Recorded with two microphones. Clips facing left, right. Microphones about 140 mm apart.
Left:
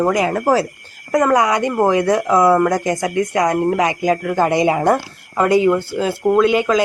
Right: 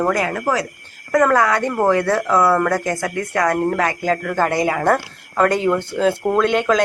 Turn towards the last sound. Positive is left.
turn(degrees=5)  # may be behind; listen again after turning